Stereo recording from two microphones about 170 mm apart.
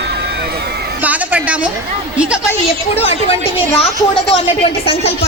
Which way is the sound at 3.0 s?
35° left (ahead or behind).